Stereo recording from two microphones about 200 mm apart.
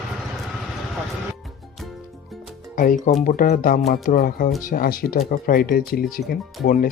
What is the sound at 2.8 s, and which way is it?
Speech, 40° left (ahead or behind).